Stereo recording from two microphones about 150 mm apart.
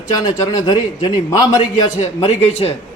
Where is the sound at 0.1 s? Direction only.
30° left (ahead or behind).